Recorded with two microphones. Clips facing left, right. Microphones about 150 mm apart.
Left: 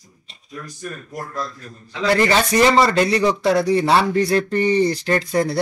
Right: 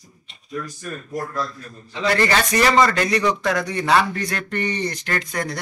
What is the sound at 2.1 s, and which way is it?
Speech, 25° left (ahead or behind).